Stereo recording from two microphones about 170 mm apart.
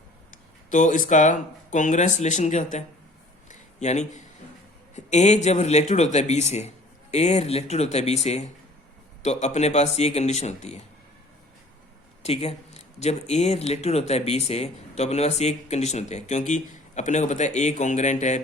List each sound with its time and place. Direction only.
0.3 s speech: 50° left (ahead or behind)
3.5 s a sound: 40° left (ahead or behind)
4.9 s speech: 45° left (ahead or behind)
12.2 s speech: 35° left (ahead or behind)